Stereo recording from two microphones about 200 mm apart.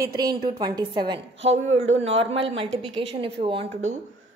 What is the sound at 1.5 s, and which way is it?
A woman's voice, 35° right (ahead or behind).